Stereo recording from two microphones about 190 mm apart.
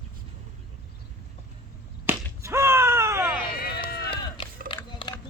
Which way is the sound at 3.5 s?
55° left (ahead or behind).